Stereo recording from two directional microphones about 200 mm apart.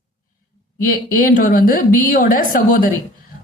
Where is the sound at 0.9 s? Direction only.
45° left (ahead or behind).